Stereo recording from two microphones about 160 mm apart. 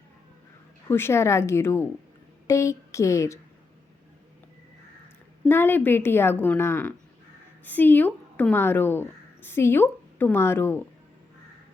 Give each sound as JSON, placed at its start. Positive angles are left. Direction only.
{"t": 0.9, "sound": "a woman's voice", "side_deg": 15}
{"t": 5.5, "sound": "a woman's voice", "side_deg": 15}